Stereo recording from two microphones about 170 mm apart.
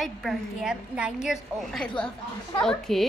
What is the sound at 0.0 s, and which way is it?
A woman's voice, centre (ahead or behind).